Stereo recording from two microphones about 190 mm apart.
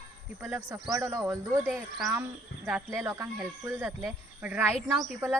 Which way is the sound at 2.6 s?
10° right (ahead or behind).